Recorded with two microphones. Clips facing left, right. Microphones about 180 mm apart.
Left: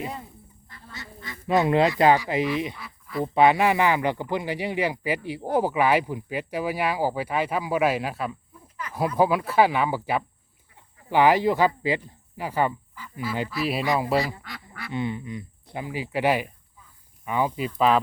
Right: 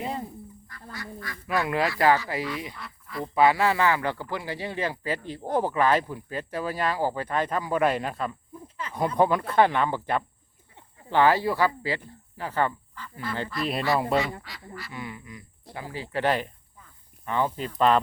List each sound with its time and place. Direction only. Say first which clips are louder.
0.9 s speech: right 2 dB; 25° left (ahead or behind)
2.7 s duck: left 5 dB; centre (ahead or behind)
3.3 s speech: left 2 dB; 20° left (ahead or behind); by 8.4 s 5° left (ahead or behind)
8.6 s a sound: even; 25° right (ahead or behind)
9.0 s speech: left 1 dB; 5° left (ahead or behind)
14.4 s speech: left 2 dB; 55° left (ahead or behind)
14.9 s speech: left 12 dB; 25° left (ahead or behind); by 18.0 s 5° left (ahead or behind)